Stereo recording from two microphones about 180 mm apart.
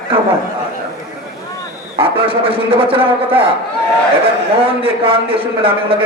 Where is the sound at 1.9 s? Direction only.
30° right (ahead or behind).